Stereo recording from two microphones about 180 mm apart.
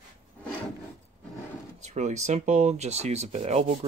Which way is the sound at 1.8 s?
40° right (ahead or behind).